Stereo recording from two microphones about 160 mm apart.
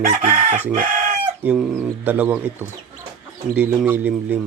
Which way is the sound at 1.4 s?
5° right (ahead or behind).